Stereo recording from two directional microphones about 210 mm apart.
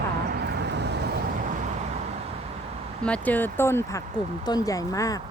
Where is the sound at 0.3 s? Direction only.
50° right (ahead or behind).